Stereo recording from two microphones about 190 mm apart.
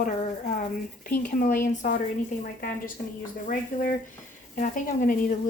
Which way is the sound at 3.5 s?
45° left (ahead or behind).